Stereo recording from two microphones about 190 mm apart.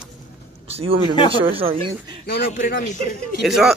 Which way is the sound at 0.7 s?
30° right (ahead or behind).